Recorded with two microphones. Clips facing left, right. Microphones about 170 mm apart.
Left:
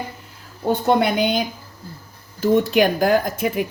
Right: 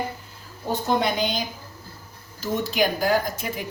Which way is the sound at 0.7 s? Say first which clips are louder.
Left 5 dB; 60° left (ahead or behind).